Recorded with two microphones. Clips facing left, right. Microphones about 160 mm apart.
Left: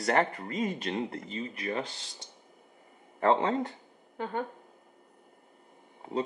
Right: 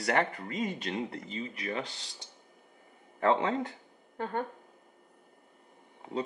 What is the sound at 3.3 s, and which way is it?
Speech, 35° left (ahead or behind).